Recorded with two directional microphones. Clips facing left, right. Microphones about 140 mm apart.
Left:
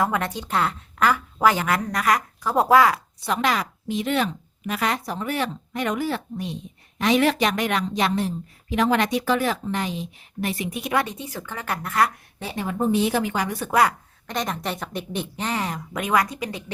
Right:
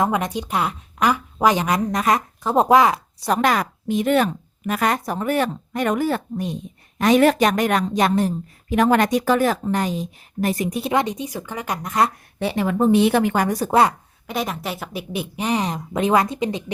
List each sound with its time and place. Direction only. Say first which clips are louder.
0.0 s a woman's voice: right 3 dB; 15° right (ahead or behind)
3.2 s a woman's voice: right 7 dB; 40° right (ahead or behind)
10.9 s speech: right 2 dB; 15° right (ahead or behind)
12.4 s a woman's voice: right 6 dB; 75° right (ahead or behind); by 13.7 s 40° right (ahead or behind)
14.3 s speech: right 2 dB; 5° right (ahead or behind); by 16.7 s 20° right (ahead or behind)